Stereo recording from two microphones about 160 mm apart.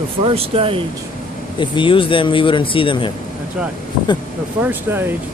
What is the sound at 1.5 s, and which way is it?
Speech, 30° left (ahead or behind).